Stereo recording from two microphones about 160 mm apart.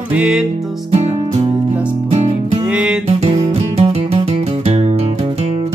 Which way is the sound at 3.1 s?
40° right (ahead or behind).